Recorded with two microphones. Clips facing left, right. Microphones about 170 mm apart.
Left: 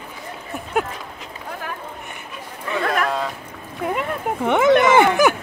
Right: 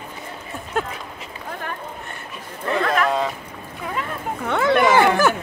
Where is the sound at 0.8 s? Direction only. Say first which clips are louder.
Left 2 dB; 10° left (ahead or behind).